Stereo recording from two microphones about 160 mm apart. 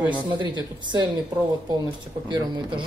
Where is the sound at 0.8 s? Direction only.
30° right (ahead or behind).